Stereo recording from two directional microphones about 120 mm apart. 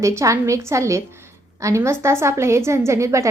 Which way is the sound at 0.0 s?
25° right (ahead or behind).